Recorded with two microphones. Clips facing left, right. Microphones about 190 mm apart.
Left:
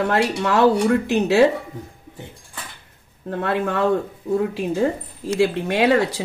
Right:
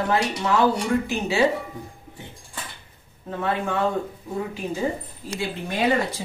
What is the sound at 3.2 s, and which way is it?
Speech, 70° left (ahead or behind).